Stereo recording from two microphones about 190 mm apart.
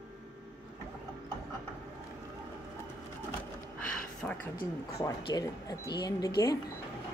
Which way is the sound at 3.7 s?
10° left (ahead or behind).